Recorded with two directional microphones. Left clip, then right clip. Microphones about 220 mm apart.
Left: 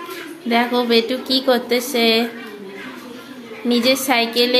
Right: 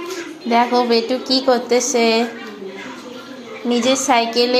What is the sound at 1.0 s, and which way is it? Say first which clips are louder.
Speech: right 1 dB; 20° left (ahead or behind).